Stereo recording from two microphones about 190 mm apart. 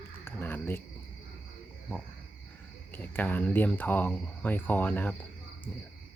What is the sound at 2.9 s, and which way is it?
Speech, 10° left (ahead or behind).